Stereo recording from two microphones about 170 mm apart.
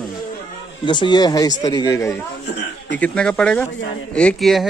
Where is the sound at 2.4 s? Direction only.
85° left.